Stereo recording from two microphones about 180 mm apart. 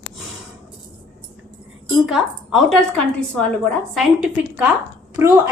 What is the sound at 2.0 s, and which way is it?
Speech, centre (ahead or behind).